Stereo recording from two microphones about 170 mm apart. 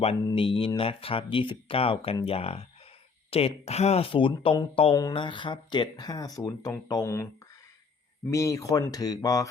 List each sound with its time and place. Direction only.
0.3 s speech: 30° left (ahead or behind); by 7.3 s 15° left (ahead or behind)
8.3 s speech: 20° left (ahead or behind)